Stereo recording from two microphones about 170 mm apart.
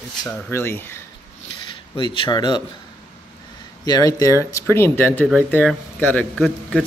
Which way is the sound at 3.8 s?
20° left (ahead or behind).